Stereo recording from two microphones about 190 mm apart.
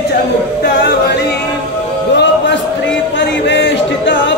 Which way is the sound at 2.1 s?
70° left (ahead or behind).